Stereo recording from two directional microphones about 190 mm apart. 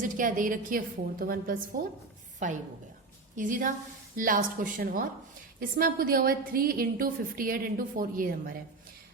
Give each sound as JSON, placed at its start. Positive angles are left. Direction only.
{"t": 0.0, "sound": "a woman's voice", "side_deg": -45}
{"t": 3.3, "sound": "a woman's voice", "side_deg": -45}